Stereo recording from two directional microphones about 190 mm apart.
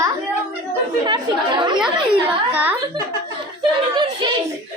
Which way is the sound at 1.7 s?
5° right (ahead or behind).